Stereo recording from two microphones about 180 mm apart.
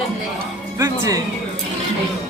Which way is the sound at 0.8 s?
20° right (ahead or behind).